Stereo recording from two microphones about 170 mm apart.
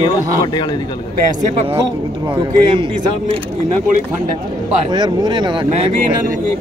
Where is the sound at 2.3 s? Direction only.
30° right (ahead or behind).